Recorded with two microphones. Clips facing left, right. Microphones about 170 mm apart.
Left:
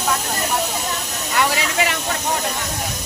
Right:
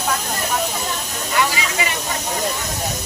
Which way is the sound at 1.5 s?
70° left (ahead or behind).